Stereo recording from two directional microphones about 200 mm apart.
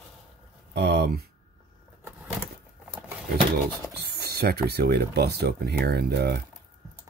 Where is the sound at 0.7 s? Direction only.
55° right (ahead or behind).